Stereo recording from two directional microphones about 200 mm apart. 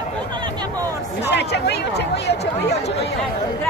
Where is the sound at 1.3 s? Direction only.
60° left (ahead or behind).